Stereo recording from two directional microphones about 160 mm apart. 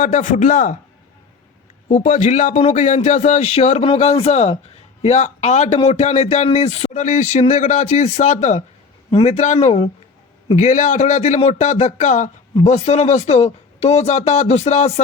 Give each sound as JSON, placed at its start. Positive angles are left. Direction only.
{"t": 0.0, "sound": "speech", "side_deg": 55}
{"t": 1.9, "sound": "speech", "side_deg": 50}